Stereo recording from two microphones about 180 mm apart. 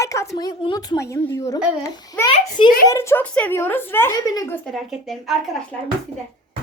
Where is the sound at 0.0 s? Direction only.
15° left (ahead or behind).